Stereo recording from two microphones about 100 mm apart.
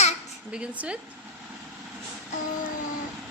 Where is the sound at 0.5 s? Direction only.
10° right (ahead or behind).